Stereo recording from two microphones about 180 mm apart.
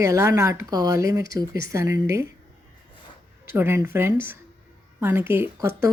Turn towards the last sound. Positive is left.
turn(degrees=-15)  # may be behind; listen again after turning